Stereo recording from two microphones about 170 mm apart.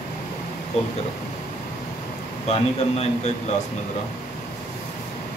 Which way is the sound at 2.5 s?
40° left (ahead or behind).